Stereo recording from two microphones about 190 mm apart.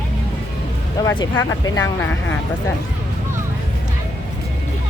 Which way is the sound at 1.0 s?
15° left (ahead or behind).